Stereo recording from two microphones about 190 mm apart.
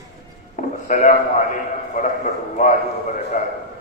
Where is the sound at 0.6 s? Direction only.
40° left (ahead or behind).